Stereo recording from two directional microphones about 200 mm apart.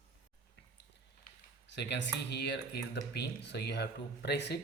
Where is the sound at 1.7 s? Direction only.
60° left (ahead or behind).